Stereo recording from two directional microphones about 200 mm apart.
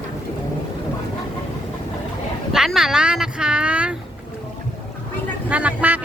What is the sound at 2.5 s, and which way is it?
Speech, centre (ahead or behind).